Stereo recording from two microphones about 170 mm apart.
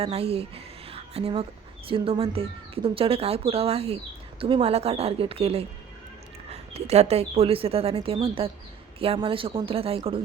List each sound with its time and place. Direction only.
0.0 s speech: 35° right (ahead or behind)